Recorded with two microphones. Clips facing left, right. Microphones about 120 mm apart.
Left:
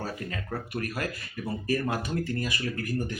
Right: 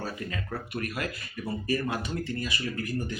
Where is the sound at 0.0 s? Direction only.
40° left (ahead or behind).